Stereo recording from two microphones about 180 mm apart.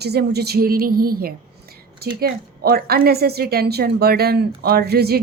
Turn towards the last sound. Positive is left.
turn(degrees=-60)  # may be behind; listen again after turning